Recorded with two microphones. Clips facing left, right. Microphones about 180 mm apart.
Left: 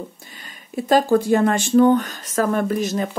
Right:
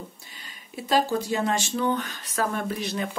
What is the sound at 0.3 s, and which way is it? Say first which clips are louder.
Speech: left 8 dB; 50° left (ahead or behind).